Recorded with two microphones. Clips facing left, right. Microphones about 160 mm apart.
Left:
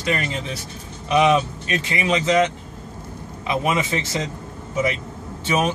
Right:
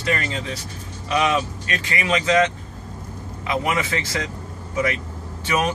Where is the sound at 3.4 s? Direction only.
20° left (ahead or behind).